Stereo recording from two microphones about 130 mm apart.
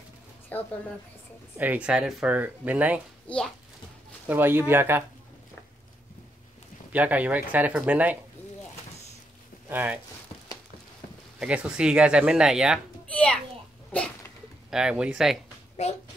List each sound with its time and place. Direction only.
0.5 s a woman's voice: 15° left (ahead or behind)
1.6 s speech: 10° right (ahead or behind)
3.3 s a woman's voice: 5° left (ahead or behind)
4.3 s speech: 15° right (ahead or behind)
6.9 s speech: 10° right (ahead or behind)
9.7 s speech: 15° right (ahead or behind)
11.3 s speech: 5° right (ahead or behind)
13.1 s a child's voice: 10° left (ahead or behind)
13.9 s a sound: 10° left (ahead or behind)
14.7 s speech: 5° right (ahead or behind)